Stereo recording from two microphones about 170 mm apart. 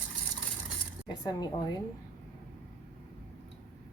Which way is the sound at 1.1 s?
25° left (ahead or behind).